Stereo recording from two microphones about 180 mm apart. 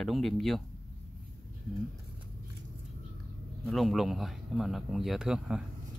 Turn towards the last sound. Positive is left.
turn(degrees=-5)  # may be behind; listen again after turning